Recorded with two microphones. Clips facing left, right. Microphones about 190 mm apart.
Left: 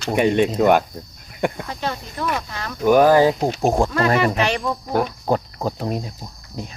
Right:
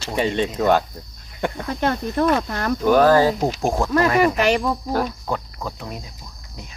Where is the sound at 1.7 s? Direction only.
55° right (ahead or behind).